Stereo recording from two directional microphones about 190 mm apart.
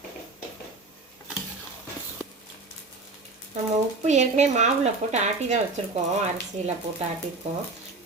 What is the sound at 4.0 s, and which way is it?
Speech, 35° right (ahead or behind).